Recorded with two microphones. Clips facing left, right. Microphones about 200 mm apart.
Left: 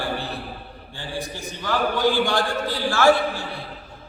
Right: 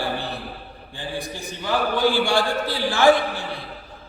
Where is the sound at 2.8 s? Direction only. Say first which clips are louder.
Right 1 dB; 15° right (ahead or behind).